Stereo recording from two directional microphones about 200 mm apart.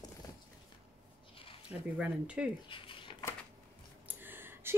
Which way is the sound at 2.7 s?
25° left (ahead or behind).